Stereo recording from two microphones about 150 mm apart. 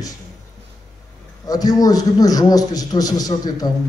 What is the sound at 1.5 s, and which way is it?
A man's voice, 25° left (ahead or behind).